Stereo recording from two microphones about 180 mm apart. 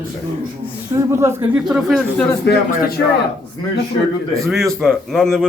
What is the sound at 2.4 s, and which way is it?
Speech, 60° left (ahead or behind).